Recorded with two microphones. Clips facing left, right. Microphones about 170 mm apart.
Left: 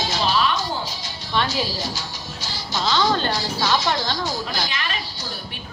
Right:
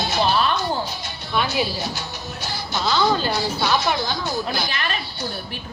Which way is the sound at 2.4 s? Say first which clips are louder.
Right 4 dB; 60° right (ahead or behind).